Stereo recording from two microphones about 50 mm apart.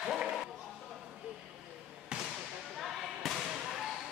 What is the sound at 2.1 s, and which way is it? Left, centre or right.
Basketball bounce, centre.